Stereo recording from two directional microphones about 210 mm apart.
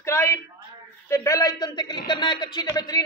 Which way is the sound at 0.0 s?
15° left (ahead or behind).